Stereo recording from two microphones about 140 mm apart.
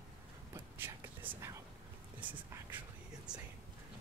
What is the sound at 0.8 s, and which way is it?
Whispering, 20° right (ahead or behind).